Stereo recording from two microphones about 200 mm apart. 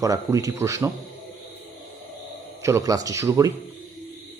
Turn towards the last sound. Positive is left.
turn(degrees=-15)  # may be behind; listen again after turning